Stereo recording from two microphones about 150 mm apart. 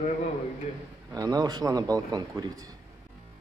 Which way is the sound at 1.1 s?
25° right (ahead or behind).